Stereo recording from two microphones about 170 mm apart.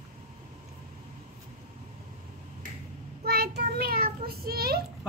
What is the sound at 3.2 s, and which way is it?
Child singing, 70° right (ahead or behind).